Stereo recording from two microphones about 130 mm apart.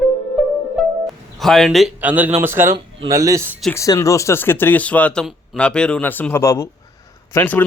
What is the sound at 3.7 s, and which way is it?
Speech, 20° left (ahead or behind).